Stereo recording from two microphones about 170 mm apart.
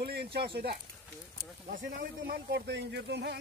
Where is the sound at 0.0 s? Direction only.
70° right (ahead or behind).